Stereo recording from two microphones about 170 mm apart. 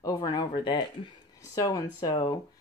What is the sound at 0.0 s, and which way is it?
Speech, 20° left (ahead or behind).